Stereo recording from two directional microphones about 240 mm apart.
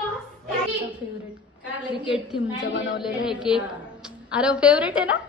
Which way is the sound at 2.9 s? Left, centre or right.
Centre.